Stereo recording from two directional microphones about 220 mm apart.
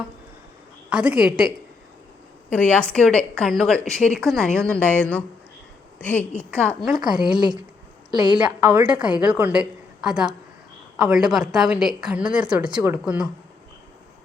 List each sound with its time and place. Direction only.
0.9 s a woman's voice: 5° right (ahead or behind)
2.5 s a woman's voice: 5° left (ahead or behind)
7.3 s a woman's voice: 20° right (ahead or behind)
8.4 s a woman's voice: 5° right (ahead or behind)